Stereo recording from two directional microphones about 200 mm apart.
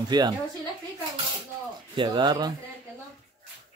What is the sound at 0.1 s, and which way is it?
Speech, 20° right (ahead or behind).